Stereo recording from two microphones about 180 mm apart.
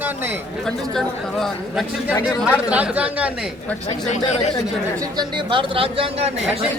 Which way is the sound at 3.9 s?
40° left (ahead or behind).